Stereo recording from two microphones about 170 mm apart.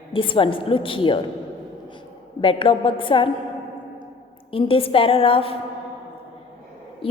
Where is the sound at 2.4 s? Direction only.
30° left (ahead or behind).